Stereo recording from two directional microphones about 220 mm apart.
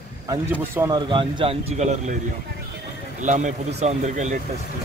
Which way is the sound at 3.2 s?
35° right (ahead or behind).